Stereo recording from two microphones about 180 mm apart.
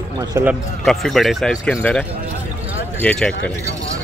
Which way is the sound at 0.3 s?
10° right (ahead or behind).